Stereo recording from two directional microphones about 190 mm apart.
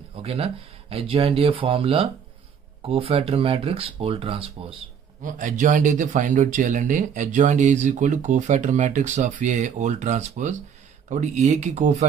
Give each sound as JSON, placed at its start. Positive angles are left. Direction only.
{"t": 0.1, "sound": "speech", "side_deg": -30}
{"t": 5.2, "sound": "speech", "side_deg": -45}